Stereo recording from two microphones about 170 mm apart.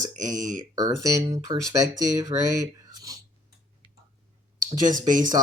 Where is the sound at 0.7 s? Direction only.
20° right (ahead or behind).